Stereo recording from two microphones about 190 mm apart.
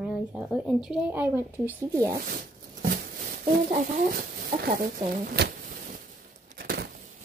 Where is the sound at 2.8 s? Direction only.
50° right (ahead or behind).